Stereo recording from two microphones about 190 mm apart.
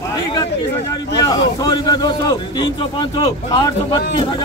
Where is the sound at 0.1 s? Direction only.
20° left (ahead or behind).